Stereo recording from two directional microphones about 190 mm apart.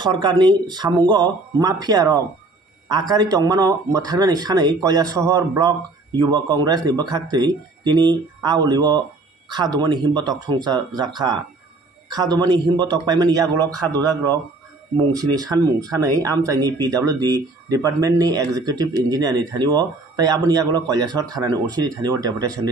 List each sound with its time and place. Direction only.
0.0 s a man's voice: 20° right (ahead or behind)
15.1 s a man's voice: 20° right (ahead or behind)